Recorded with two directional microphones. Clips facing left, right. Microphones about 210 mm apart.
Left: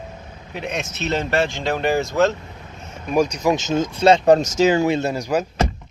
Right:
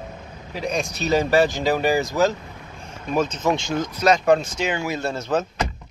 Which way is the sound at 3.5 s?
20° left (ahead or behind).